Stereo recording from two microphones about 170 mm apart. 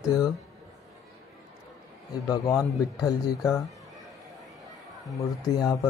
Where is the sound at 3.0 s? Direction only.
20° left (ahead or behind).